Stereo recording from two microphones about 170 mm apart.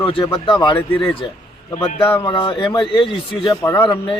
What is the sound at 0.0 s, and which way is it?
Speech, 30° left (ahead or behind).